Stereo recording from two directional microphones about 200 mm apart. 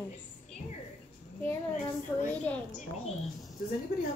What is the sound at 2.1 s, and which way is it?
Speech, 10° left (ahead or behind).